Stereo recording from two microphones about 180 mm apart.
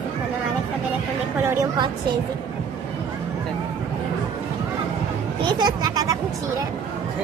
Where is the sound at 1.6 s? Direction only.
25° right (ahead or behind).